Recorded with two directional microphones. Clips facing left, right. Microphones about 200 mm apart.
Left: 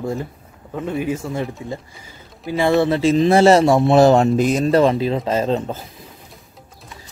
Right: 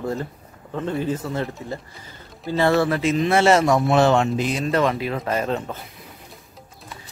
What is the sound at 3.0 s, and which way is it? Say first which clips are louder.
Speech: left 5 dB; 30° left (ahead or behind).